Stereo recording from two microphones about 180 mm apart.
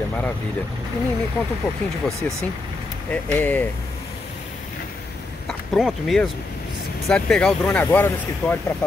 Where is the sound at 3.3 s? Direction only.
10° left (ahead or behind).